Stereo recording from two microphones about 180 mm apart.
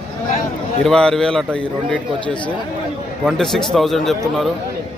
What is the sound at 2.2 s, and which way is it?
Speech, 25° left (ahead or behind).